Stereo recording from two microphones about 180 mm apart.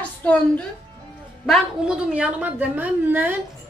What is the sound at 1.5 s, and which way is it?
A woman's voice, 5° right (ahead or behind).